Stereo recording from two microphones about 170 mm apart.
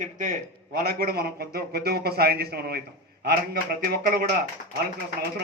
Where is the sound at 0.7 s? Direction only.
65° right (ahead or behind).